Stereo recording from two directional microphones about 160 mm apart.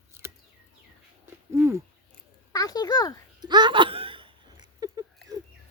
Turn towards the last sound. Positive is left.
turn(degrees=-25)  # may be behind; listen again after turning